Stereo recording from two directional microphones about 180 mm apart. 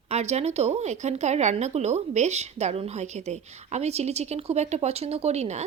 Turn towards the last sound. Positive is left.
turn(degrees=-40)  # may be behind; listen again after turning